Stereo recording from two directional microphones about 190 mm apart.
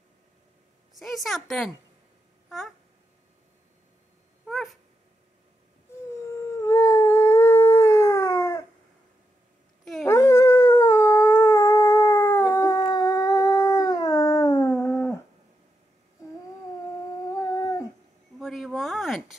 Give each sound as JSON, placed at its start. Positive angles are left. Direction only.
{"t": 0.9, "sound": "a woman's voice", "side_deg": 0}
{"t": 4.5, "sound": "cat", "side_deg": 0}
{"t": 6.3, "sound": "howl", "side_deg": 15}
{"t": 10.0, "sound": "howl", "side_deg": 15}
{"t": 17.3, "sound": "dog", "side_deg": 15}
{"t": 18.4, "sound": "a sound", "side_deg": 0}